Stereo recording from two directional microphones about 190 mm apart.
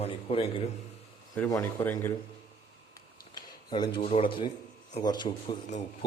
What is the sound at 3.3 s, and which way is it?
A man's voice, 25° left (ahead or behind).